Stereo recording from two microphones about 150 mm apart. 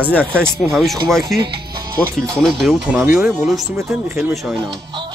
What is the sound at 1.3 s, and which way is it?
Speech, 90° right.